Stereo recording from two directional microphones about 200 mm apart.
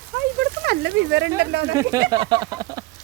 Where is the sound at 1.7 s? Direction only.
15° right (ahead or behind).